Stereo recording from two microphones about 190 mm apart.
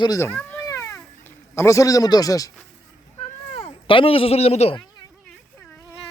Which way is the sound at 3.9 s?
30° left (ahead or behind).